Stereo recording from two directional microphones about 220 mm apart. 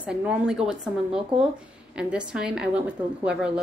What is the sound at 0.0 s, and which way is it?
A woman's voice, 5° right (ahead or behind).